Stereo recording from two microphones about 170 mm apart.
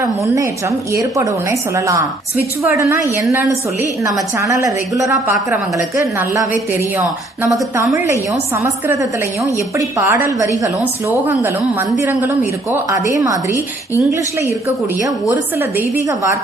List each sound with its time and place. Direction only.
0.9 s a woman's voice: 20° right (ahead or behind)
4.0 s a woman's voice: 20° right (ahead or behind)
8.6 s a woman's voice: 15° right (ahead or behind)
12.0 s a woman's voice: 10° right (ahead or behind)
16.0 s a woman's voice: 15° right (ahead or behind)